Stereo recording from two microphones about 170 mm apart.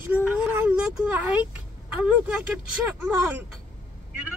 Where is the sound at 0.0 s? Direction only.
10° right (ahead or behind).